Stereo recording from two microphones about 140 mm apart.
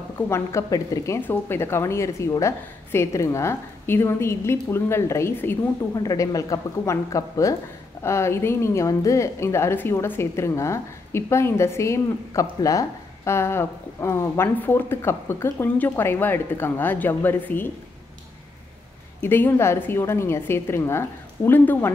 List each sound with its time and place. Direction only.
0.3 s a woman's voice: 20° left (ahead or behind)
19.2 s a woman's voice: 15° left (ahead or behind)